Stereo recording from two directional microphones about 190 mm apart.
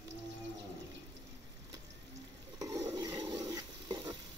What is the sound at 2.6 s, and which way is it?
Stir, 15° right (ahead or behind).